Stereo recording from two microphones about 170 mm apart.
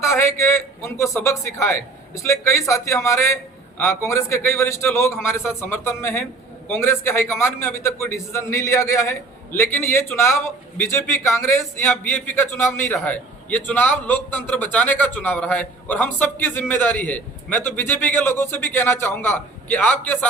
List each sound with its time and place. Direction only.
0.0 s a man's voice: 15° left (ahead or behind)